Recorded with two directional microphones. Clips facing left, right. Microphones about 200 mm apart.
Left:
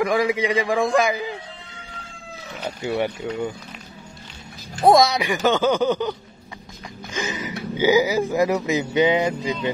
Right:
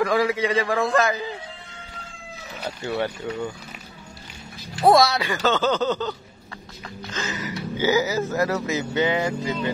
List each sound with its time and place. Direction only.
0.0 s speech: 15° left (ahead or behind)
2.8 s speech: 15° left (ahead or behind)
4.8 s speech: 15° left (ahead or behind)